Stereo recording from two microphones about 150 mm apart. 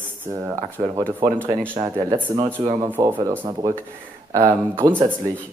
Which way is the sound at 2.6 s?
40° right (ahead or behind).